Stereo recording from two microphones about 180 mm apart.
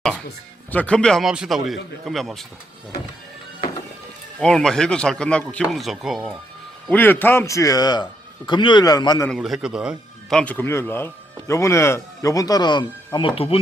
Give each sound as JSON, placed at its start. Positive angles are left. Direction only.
{"t": 0.7, "sound": "speech", "side_deg": 5}
{"t": 4.4, "sound": "speech", "side_deg": 0}
{"t": 6.8, "sound": "a man's voice", "side_deg": 10}
{"t": 9.3, "sound": "speech", "side_deg": 0}